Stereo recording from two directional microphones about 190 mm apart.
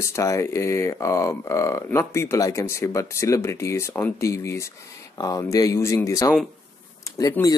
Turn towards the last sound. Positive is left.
turn(degrees=20)  # may be behind; listen again after turning